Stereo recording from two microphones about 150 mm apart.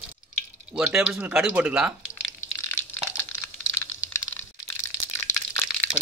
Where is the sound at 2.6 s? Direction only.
15° left (ahead or behind).